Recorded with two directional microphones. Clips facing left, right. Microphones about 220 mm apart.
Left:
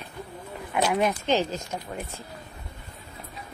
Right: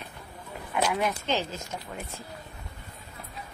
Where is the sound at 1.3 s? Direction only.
15° left (ahead or behind).